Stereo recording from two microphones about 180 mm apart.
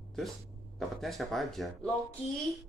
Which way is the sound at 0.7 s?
Centre (ahead or behind).